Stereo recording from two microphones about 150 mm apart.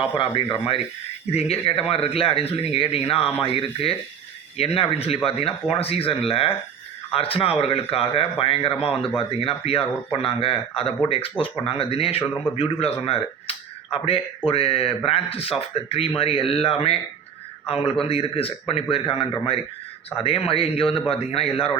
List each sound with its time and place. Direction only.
0.0 s speech: 35° left (ahead or behind)